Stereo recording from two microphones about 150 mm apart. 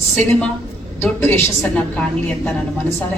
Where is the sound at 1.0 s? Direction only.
15° left (ahead or behind).